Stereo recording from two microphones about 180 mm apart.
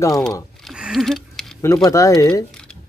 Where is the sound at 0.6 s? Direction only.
Centre (ahead or behind).